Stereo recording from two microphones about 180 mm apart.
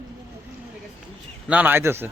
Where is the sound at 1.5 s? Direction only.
10° right (ahead or behind).